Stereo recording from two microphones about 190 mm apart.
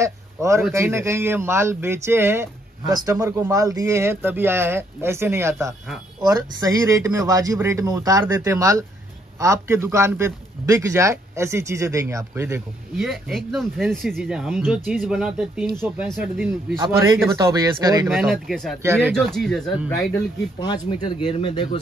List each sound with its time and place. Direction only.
0.0 s speech: 15° right (ahead or behind)
12.9 s speech: centre (ahead or behind)
16.8 s speech: 20° right (ahead or behind)
18.1 s speech: centre (ahead or behind)
18.8 s speech: 15° right (ahead or behind)
19.1 s speech: centre (ahead or behind)
20.6 s speech: 20° left (ahead or behind)